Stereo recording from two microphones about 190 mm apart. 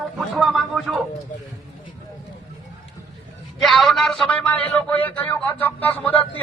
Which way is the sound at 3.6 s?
Centre (ahead or behind).